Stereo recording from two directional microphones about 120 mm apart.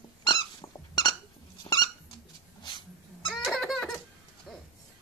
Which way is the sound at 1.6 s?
35° left (ahead or behind).